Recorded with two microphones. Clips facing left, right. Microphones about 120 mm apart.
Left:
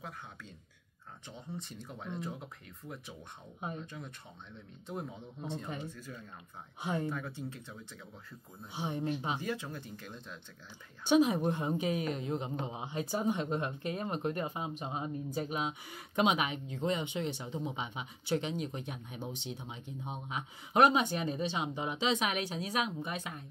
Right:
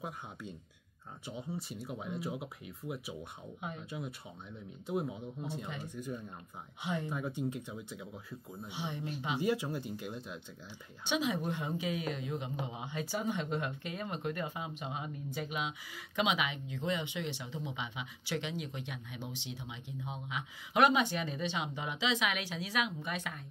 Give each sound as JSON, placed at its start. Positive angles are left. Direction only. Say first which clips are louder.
{"t": 0.0, "sound": "speech", "louder": "right 4 dB", "side_deg": -15}
{"t": 6.8, "sound": "speech", "louder": "left 2 dB", "side_deg": 40}
{"t": 7.1, "sound": "speech", "louder": "right 3 dB", "side_deg": -15}
{"t": 8.7, "sound": "speech", "louder": "left 5 dB", "side_deg": 40}
{"t": 9.4, "sound": "speech", "louder": "right 5 dB", "side_deg": -15}
{"t": 11.4, "sound": "a woman's voice", "louder": "left 4 dB", "side_deg": 40}